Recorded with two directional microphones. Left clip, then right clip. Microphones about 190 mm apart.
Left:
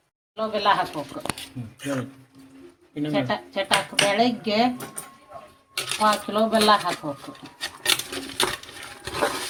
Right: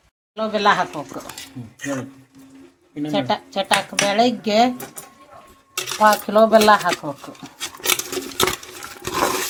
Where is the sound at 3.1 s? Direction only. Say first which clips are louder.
Right 4 dB; 35° right (ahead or behind).